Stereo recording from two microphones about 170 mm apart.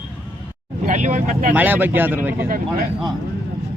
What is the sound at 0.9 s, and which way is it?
Speech, 45° right (ahead or behind).